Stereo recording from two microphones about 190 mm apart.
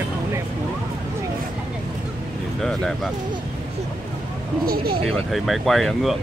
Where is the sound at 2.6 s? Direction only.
Centre (ahead or behind).